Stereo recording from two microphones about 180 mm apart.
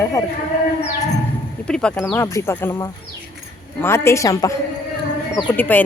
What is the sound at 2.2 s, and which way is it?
A woman's voice, 15° left (ahead or behind).